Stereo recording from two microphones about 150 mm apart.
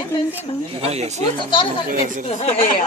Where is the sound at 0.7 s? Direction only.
45° right (ahead or behind).